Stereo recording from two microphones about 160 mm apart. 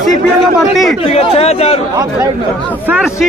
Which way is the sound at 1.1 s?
40° left (ahead or behind).